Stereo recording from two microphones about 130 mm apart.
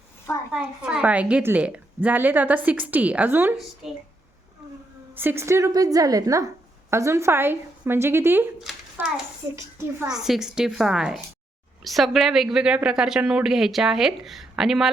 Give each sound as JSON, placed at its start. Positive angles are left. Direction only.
{"t": 0.5, "sound": "a woman's voice", "side_deg": -5}
{"t": 3.8, "sound": "a woman's voice", "side_deg": -5}
{"t": 5.1, "sound": "a woman's voice", "side_deg": -15}
{"t": 9.0, "sound": "a sound", "side_deg": -15}
{"t": 10.1, "sound": "a woman's voice", "side_deg": -5}